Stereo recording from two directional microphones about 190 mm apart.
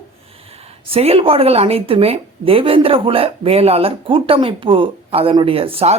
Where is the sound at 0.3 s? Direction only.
30° right (ahead or behind).